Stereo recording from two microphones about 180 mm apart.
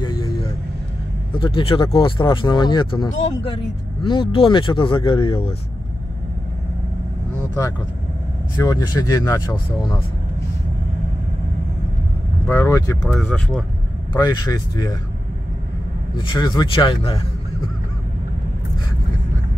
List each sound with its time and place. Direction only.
1.3 s speech: 30° left (ahead or behind)
8.6 s speech: 20° left (ahead or behind)
12.4 s speech: 15° left (ahead or behind)
13.2 s speech: 5° left (ahead or behind)
14.2 s speech: 20° left (ahead or behind)
16.2 s speech: 25° left (ahead or behind)